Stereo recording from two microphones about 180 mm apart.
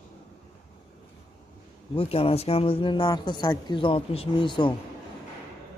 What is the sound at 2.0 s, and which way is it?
Speech, 30° left (ahead or behind).